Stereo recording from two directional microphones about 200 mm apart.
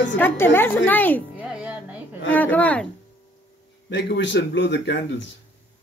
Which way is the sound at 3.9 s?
60° left (ahead or behind).